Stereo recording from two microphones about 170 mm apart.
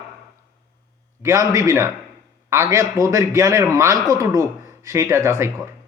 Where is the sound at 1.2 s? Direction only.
15° right (ahead or behind).